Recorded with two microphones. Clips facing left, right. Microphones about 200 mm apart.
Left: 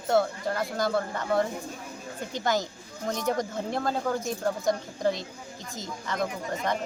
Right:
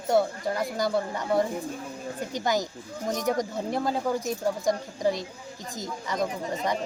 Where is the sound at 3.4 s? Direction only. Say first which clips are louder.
Right 2 dB; 15° right (ahead or behind).